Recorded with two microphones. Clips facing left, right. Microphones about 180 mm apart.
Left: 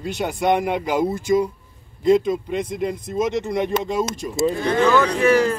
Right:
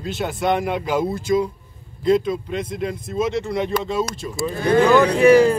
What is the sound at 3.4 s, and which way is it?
Speech, 20° left (ahead or behind).